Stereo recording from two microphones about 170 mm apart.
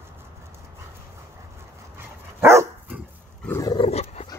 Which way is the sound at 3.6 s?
25° left (ahead or behind).